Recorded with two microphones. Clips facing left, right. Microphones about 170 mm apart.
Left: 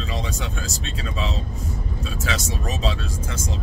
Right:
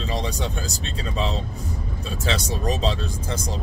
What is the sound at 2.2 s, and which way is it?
Speech, 30° right (ahead or behind).